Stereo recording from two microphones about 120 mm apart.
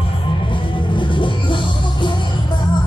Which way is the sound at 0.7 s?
45° left (ahead or behind).